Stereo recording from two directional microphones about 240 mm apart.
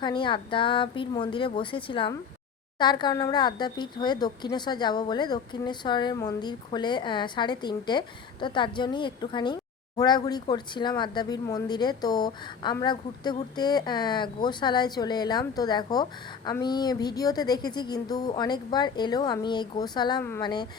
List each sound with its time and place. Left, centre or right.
0.0 s a woman's voice: centre